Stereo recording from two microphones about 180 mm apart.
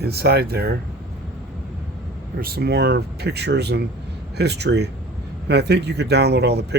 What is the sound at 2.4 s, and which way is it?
Speech, 60° right (ahead or behind).